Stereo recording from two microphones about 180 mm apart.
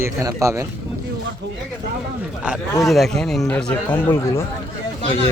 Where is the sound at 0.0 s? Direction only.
15° right (ahead or behind).